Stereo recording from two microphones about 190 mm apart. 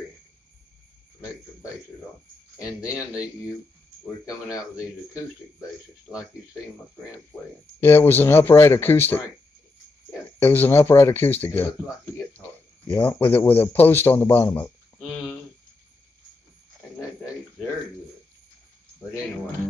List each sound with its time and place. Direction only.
4.5 s a man's voice: 15° left (ahead or behind)
7.8 s a man's voice: 10° left (ahead or behind)
10.4 s a man's voice: 10° left (ahead or behind)
12.9 s a man's voice: 10° left (ahead or behind)